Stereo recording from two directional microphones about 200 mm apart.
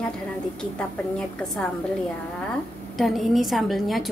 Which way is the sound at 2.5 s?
Centre (ahead or behind).